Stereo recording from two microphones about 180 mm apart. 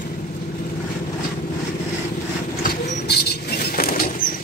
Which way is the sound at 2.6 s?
65° left (ahead or behind).